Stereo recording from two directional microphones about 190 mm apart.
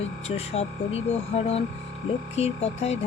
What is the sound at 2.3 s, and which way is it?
Music, 35° left (ahead or behind).